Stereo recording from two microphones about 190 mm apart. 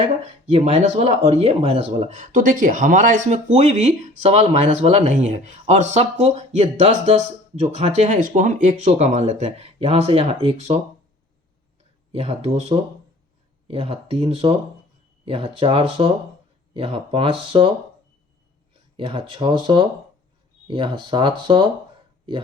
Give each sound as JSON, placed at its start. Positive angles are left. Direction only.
{"t": 0.0, "sound": "speech", "side_deg": -35}
{"t": 12.1, "sound": "speech", "side_deg": -30}
{"t": 18.9, "sound": "speech", "side_deg": -25}